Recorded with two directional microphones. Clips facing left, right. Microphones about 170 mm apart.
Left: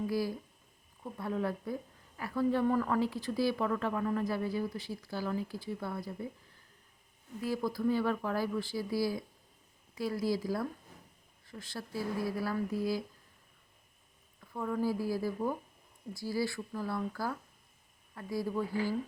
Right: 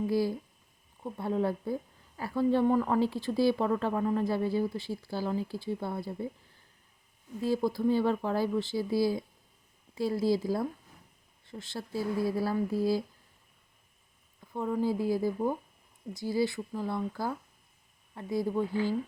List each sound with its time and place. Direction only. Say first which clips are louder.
0.1 s a woman's voice: right 5 dB; 25° right (ahead or behind)
7.4 s a woman's voice: right 4 dB; 25° right (ahead or behind)
14.5 s a woman's voice: right 3 dB; 20° right (ahead or behind)